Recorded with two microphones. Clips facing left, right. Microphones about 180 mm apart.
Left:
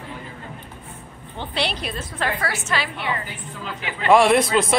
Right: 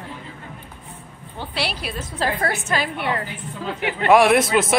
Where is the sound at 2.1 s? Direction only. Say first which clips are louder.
Right 3 dB; 40° right (ahead or behind); by 3.3 s 60° right (ahead or behind).